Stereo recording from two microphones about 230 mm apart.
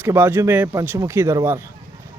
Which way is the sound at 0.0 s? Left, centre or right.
Centre.